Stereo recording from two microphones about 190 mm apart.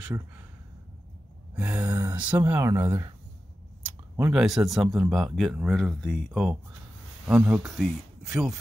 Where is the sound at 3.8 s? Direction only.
10° right (ahead or behind).